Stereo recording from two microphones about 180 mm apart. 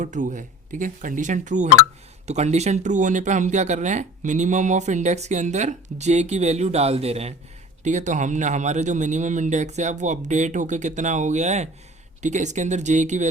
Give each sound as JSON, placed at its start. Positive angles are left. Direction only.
{"t": 0.0, "sound": "speech", "side_deg": -45}